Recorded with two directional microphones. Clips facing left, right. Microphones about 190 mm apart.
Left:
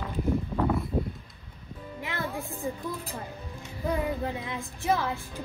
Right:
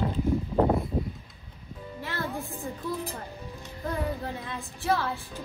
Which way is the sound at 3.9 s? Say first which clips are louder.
Left 2 dB; 15° left (ahead or behind).